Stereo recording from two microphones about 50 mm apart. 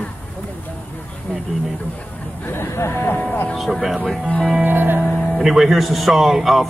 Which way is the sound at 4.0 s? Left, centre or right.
Centre.